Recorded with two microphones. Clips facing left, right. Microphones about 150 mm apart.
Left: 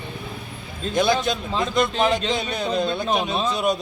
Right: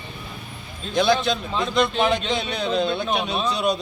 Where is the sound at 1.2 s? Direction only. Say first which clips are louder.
Even; 45° left (ahead or behind).